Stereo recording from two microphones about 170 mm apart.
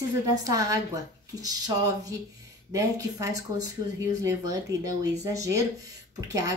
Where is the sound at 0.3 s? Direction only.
20° right (ahead or behind).